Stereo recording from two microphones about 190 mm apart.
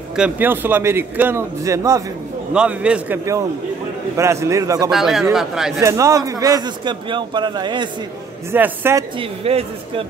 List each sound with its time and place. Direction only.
0.1 s a man's voice: 5° right (ahead or behind)
2.5 s a man's voice: 5° right (ahead or behind)
4.9 s speech: centre (ahead or behind)
5.8 s a man's voice: 15° right (ahead or behind)
8.5 s a man's voice: 10° right (ahead or behind)
9.2 s speech: 30° right (ahead or behind)